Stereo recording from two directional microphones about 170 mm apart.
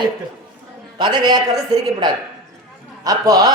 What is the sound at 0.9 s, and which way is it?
A woman's voice, 25° right (ahead or behind).